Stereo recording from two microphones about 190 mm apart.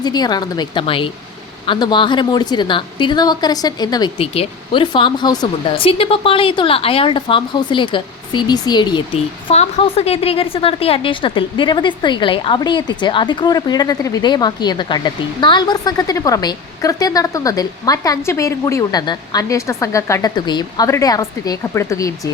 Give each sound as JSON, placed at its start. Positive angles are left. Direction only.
{"t": 0.0, "sound": "speech", "side_deg": 20}